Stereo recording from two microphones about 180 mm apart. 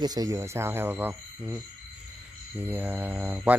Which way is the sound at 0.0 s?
20° right (ahead or behind).